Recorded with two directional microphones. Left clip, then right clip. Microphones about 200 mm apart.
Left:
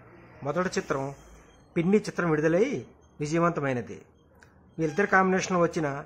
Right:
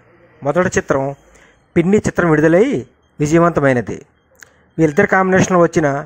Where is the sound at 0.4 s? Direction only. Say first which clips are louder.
Right 13 dB; 35° right (ahead or behind).